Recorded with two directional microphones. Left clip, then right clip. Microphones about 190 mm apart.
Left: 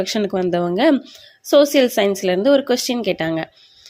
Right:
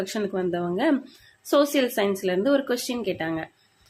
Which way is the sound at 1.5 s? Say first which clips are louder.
Left 8 dB; 35° left (ahead or behind).